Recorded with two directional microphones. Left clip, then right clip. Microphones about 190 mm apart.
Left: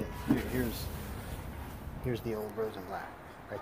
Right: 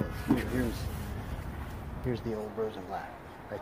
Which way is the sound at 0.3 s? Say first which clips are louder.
Right 2 dB; 5° left (ahead or behind).